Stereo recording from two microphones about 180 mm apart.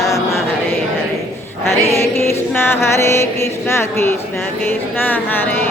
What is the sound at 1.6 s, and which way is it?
Mantra, 15° left (ahead or behind).